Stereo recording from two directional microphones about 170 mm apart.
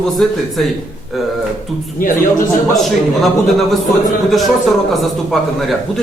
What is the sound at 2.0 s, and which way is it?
Speech, 50° left (ahead or behind).